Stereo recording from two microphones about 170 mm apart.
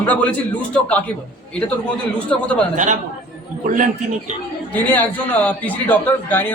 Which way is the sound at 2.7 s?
50° right (ahead or behind).